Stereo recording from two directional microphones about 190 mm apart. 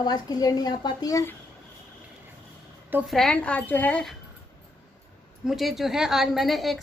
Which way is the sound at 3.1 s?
5° left (ahead or behind).